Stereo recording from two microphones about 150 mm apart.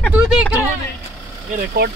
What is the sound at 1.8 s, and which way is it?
Speech, 90° right.